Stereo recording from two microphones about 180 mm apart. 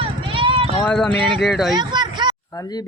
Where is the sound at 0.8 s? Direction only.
5° left (ahead or behind).